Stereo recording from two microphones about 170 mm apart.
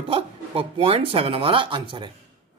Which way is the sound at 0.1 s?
35° right (ahead or behind).